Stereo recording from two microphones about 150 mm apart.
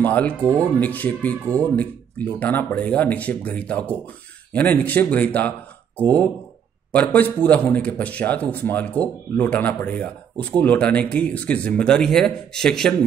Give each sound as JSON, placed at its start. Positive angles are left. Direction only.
{"t": 0.0, "sound": "speech", "side_deg": 10}
{"t": 0.4, "sound": "speech", "side_deg": -20}
{"t": 0.7, "sound": "speech", "side_deg": 10}
{"t": 6.9, "sound": "speech", "side_deg": 10}